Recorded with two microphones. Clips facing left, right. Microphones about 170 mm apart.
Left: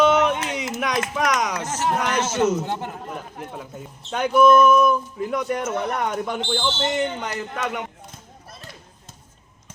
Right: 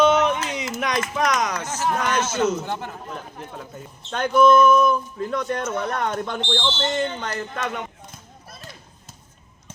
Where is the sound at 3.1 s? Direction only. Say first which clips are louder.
Left 2 dB; 10° left (ahead or behind).